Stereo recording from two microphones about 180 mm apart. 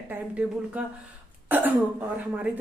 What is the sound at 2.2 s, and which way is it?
Speech, 10° right (ahead or behind).